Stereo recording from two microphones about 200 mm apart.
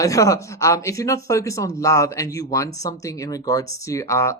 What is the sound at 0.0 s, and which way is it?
Speech, 15° left (ahead or behind).